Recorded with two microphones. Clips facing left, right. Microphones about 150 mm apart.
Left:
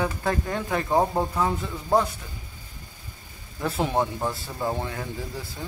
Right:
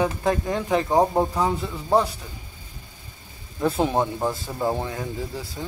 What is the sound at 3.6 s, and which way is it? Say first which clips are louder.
A man's voice: right 3 dB; 15° right (ahead or behind).